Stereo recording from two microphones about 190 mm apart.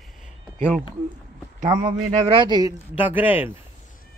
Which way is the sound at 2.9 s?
10° right (ahead or behind).